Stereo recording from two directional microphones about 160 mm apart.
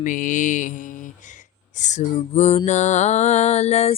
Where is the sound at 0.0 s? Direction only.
55° left (ahead or behind).